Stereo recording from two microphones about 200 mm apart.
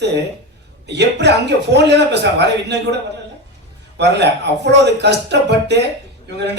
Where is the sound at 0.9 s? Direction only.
60° right (ahead or behind).